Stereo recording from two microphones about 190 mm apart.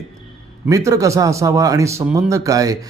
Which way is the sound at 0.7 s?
15° right (ahead or behind).